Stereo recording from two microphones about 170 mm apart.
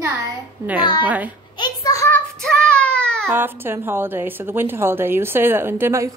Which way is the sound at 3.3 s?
10° right (ahead or behind).